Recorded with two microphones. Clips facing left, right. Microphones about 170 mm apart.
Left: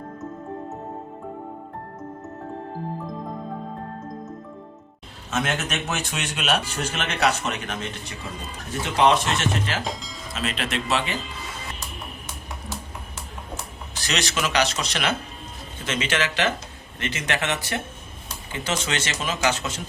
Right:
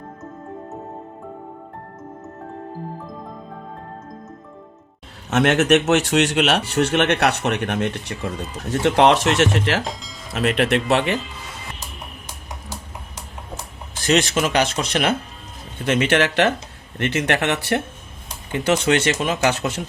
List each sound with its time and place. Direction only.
5.3 s a man's voice: 70° right (ahead or behind)
9.8 s speech: centre (ahead or behind)
10.3 s speech: 60° right (ahead or behind)
14.1 s speech: 50° right (ahead or behind)